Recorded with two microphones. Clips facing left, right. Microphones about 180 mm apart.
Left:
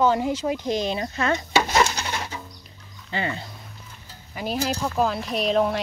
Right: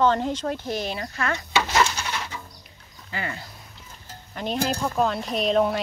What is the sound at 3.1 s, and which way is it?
Speech, 25° left (ahead or behind).